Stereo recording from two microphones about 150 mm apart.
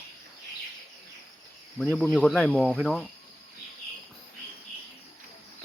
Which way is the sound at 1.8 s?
10° left (ahead or behind).